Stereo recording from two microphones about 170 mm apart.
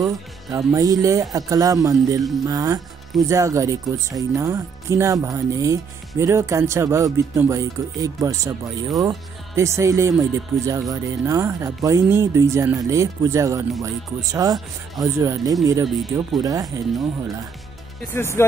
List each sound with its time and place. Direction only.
0.7 s speech: 20° right (ahead or behind)
18.1 s speech: 15° left (ahead or behind)